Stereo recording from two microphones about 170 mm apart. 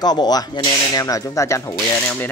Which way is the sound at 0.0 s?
25° left (ahead or behind).